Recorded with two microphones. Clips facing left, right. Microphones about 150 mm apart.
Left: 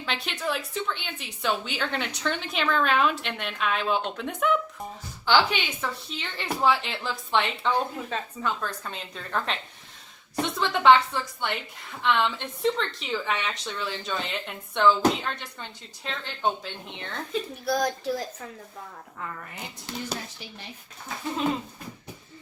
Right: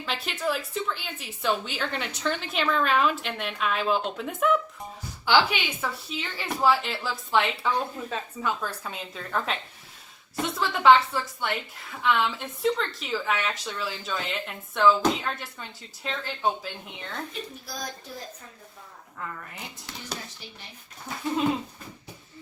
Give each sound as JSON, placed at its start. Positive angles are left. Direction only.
{"t": 0.0, "sound": "a woman's voice", "side_deg": -5}
{"t": 17.7, "sound": "a woman's voice", "side_deg": 75}